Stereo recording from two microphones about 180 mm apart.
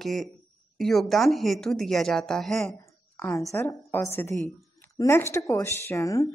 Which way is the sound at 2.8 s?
15° left (ahead or behind).